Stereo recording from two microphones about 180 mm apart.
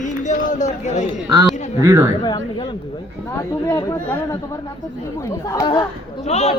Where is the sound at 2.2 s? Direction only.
25° left (ahead or behind).